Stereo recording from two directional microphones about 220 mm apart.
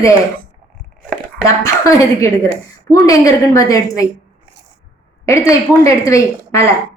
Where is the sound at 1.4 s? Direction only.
15° left (ahead or behind).